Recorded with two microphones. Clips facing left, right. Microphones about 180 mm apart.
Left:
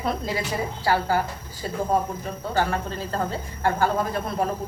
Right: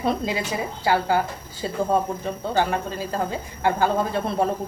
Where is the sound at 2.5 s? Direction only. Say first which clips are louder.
Right 1 dB; 15° right (ahead or behind).